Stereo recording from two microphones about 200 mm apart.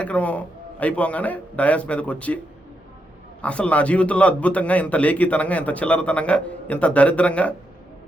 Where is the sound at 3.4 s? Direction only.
5° left (ahead or behind).